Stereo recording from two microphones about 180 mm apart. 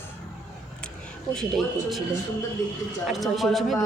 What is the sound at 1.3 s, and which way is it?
Speech, centre (ahead or behind).